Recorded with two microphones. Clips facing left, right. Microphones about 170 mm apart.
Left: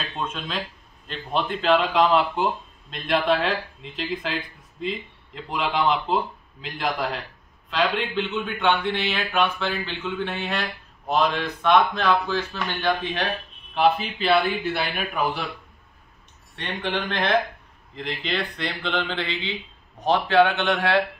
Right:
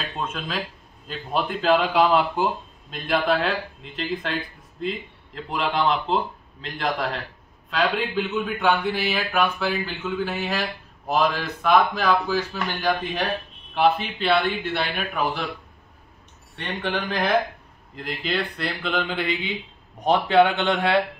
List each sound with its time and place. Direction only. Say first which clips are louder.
0.2 s a man's voice: right 1 dB; 5° right (ahead or behind)
16.5 s a man's voice: even; centre (ahead or behind)